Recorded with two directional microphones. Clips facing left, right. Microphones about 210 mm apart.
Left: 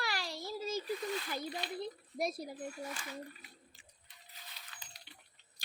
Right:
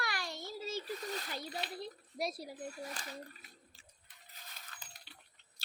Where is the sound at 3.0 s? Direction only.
40° right (ahead or behind).